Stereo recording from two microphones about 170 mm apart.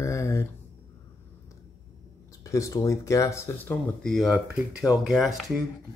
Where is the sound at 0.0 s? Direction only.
15° left (ahead or behind).